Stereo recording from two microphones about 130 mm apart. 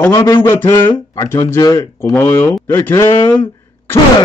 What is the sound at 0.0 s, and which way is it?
A man's voice, 20° left (ahead or behind).